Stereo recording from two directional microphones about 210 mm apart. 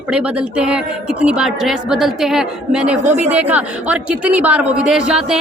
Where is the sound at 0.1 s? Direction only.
5° right (ahead or behind).